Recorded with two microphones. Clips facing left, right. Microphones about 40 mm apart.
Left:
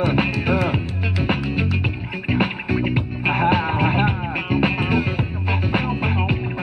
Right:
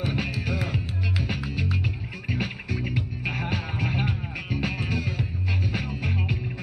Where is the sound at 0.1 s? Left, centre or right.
Left.